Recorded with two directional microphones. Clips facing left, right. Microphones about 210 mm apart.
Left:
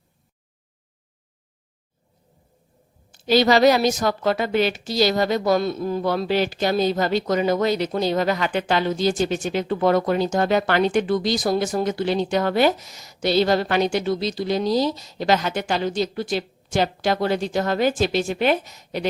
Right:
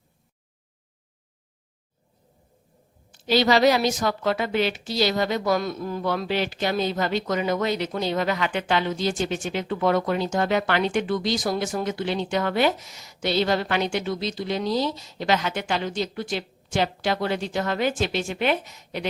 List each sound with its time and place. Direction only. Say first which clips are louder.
3.1 s a woman's voice: left 3 dB; 45° left (ahead or behind)